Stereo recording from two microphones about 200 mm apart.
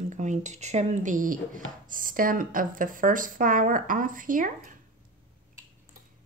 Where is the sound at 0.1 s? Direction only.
35° right (ahead or behind).